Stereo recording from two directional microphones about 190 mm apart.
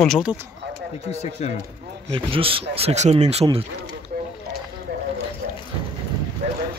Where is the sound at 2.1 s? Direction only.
30° right (ahead or behind).